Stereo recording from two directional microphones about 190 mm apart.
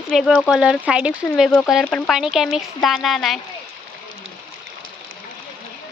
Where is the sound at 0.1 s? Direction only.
Centre (ahead or behind).